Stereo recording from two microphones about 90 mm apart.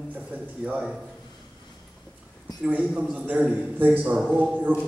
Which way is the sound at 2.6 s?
15° right (ahead or behind).